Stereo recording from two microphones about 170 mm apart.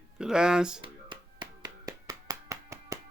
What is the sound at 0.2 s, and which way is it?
Speech, 5° right (ahead or behind).